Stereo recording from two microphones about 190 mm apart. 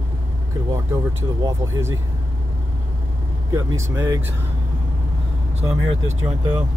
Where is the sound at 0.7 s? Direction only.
15° right (ahead or behind).